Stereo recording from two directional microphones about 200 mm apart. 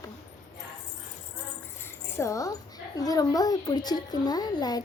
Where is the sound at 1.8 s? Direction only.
15° left (ahead or behind).